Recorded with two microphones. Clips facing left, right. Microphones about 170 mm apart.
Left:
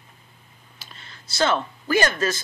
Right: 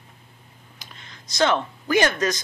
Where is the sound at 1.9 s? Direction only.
15° right (ahead or behind).